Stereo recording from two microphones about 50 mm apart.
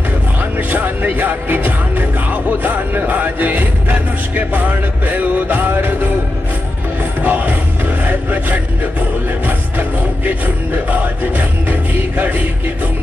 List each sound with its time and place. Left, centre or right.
0.6 s music: right
7.2 s music: right
8.0 s a sound: right
9.5 s music: right